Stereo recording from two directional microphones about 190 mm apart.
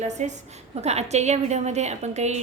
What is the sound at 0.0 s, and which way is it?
A woman's voice, 40° right (ahead or behind).